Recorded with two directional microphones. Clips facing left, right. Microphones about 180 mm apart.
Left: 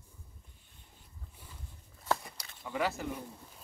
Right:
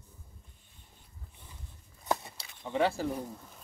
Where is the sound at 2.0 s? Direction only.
20° right (ahead or behind).